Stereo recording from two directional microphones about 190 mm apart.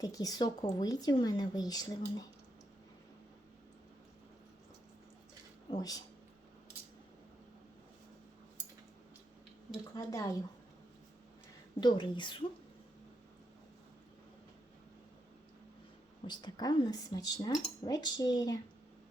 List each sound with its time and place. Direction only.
0.0 s speech: 20° left (ahead or behind)
5.7 s speech: 20° left (ahead or behind)
9.9 s a woman's voice: 15° left (ahead or behind)
11.8 s speech: 25° left (ahead or behind)
16.2 s speech: 20° left (ahead or behind)